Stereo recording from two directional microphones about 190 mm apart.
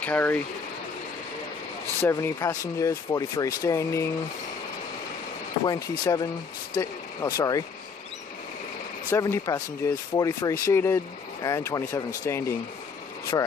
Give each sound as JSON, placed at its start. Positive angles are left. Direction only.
{"t": 0.0, "sound": "speech", "side_deg": 10}
{"t": 2.0, "sound": "speech", "side_deg": 15}
{"t": 5.7, "sound": "speech", "side_deg": 20}
{"t": 9.1, "sound": "speech", "side_deg": 15}